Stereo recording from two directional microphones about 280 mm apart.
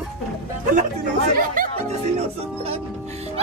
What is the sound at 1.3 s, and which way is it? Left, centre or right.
Music, right.